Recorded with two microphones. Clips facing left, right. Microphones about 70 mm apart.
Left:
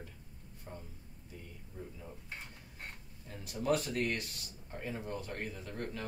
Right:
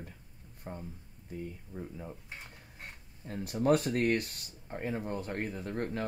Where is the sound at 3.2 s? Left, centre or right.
Right.